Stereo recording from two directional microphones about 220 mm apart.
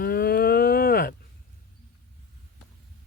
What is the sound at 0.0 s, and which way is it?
Moo, 40° left (ahead or behind).